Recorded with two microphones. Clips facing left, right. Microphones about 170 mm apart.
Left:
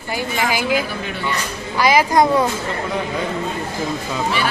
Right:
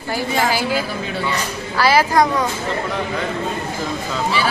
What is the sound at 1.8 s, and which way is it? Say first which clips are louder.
Speech: even; 15° left (ahead or behind).